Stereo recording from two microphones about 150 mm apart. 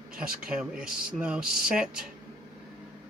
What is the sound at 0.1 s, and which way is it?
Speech, 70° right (ahead or behind).